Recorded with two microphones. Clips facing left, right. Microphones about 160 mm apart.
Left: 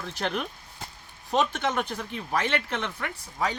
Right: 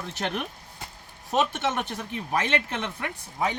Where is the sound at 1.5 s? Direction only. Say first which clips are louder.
Even; 20° right (ahead or behind).